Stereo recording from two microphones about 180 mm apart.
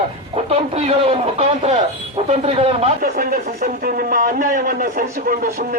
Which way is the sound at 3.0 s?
55° right (ahead or behind).